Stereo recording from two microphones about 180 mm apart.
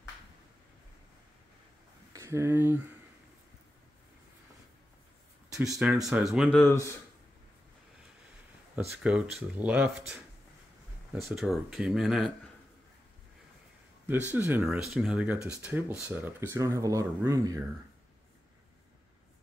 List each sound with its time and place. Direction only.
2.1 s speech: 15° right (ahead or behind)
5.5 s speech: 5° right (ahead or behind)
6.7 s speech: 15° left (ahead or behind)
8.7 s speech: 5° right (ahead or behind)
11.3 s speech: centre (ahead or behind)
14.0 s speech: 10° right (ahead or behind)